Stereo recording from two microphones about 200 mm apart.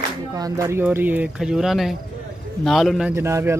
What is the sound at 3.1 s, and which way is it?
Speech, 15° right (ahead or behind).